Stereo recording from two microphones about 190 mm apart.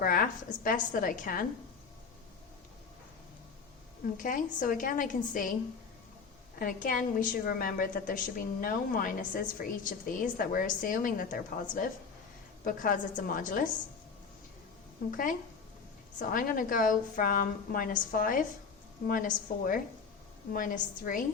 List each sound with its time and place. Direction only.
0.0 s a woman's voice: 45° left (ahead or behind)
4.2 s a woman's voice: 45° left (ahead or behind)
6.6 s a woman's voice: 45° left (ahead or behind)
15.1 s a woman's voice: 45° left (ahead or behind)